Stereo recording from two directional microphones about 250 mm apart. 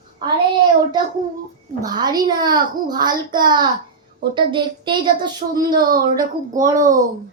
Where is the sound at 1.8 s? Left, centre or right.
Centre.